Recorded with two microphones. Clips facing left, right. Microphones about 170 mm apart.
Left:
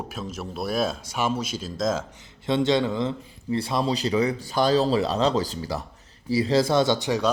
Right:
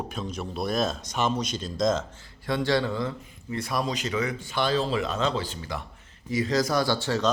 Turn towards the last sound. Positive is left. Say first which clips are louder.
# left 3 dB
turn(degrees=15)  # may be behind; listen again after turning